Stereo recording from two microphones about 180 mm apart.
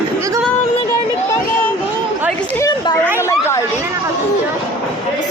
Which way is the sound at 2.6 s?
20° left (ahead or behind).